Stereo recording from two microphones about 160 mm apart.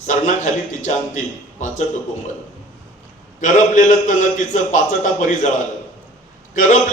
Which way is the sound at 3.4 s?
55° left (ahead or behind).